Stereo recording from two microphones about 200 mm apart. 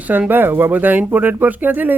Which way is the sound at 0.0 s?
10° right (ahead or behind).